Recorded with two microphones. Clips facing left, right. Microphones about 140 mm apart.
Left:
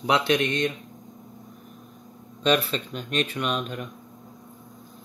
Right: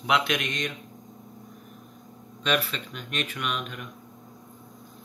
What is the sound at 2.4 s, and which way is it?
Speech, 35° left (ahead or behind).